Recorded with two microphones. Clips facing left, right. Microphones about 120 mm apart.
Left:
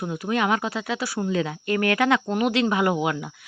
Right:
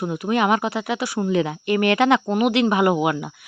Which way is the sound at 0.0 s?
20° right (ahead or behind).